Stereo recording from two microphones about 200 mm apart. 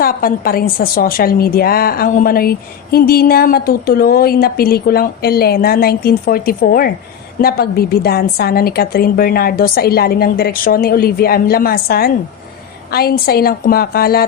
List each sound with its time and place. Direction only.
0.0 s a woman's voice: 45° left (ahead or behind)